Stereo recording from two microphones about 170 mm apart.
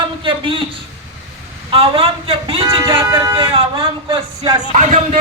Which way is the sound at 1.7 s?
35° right (ahead or behind).